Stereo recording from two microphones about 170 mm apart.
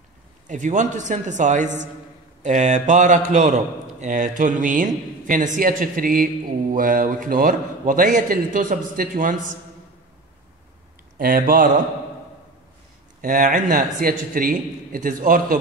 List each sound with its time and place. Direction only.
0.5 s a man's voice: 45° right (ahead or behind)
11.1 s speech: 55° right (ahead or behind)
13.2 s a man's voice: 50° right (ahead or behind)